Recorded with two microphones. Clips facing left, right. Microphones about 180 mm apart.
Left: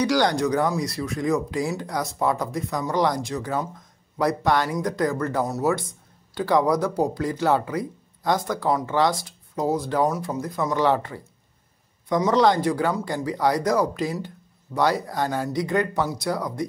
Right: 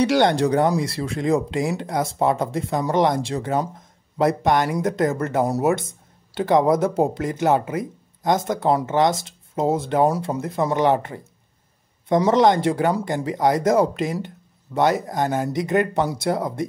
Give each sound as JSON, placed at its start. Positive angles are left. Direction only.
{"t": 0.0, "sound": "speech", "side_deg": -25}